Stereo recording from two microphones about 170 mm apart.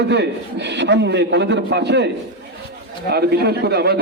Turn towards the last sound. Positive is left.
turn(degrees=-70)  # may be behind; listen again after turning